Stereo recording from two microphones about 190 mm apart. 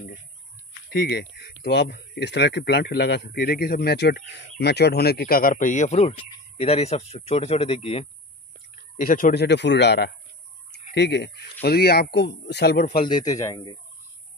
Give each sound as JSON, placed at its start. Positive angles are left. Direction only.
{"t": 0.9, "sound": "speech", "side_deg": 55}
{"t": 9.0, "sound": "speech", "side_deg": 45}
{"t": 12.8, "sound": "a man's voice", "side_deg": 25}